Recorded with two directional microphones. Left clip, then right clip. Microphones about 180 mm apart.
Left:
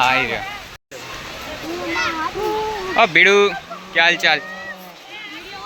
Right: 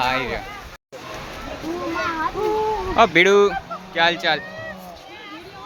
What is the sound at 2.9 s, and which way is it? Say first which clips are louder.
Speech: left 2 dB; 15° right (ahead or behind).